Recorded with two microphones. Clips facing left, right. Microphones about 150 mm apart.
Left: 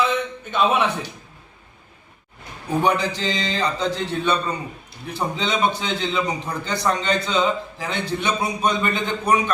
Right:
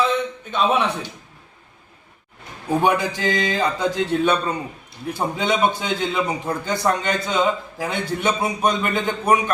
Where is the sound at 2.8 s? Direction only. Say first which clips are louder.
Even; 10° right (ahead or behind).